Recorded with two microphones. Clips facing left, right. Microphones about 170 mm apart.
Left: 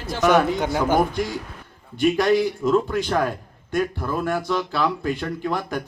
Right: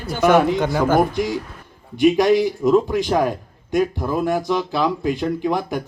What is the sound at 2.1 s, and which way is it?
Speech, 20° right (ahead or behind).